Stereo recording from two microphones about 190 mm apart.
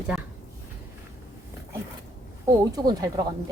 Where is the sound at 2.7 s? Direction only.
20° right (ahead or behind).